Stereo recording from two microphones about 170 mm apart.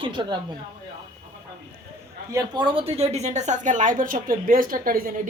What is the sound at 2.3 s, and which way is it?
Speech, 20° right (ahead or behind).